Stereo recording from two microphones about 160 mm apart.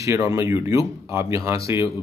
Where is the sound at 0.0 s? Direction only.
20° right (ahead or behind).